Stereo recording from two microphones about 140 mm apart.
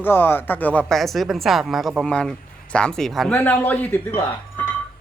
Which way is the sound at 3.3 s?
15° left (ahead or behind).